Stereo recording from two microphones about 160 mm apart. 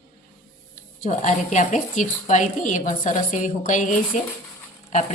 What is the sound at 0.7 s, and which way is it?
Speech, 50° left (ahead or behind).